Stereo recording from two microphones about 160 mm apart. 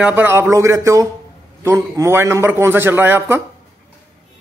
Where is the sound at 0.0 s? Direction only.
10° right (ahead or behind).